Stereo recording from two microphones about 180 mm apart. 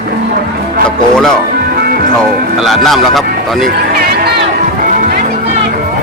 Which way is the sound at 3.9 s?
55° right (ahead or behind).